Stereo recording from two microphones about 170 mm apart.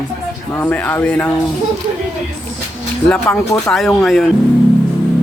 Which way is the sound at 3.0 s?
5° left (ahead or behind).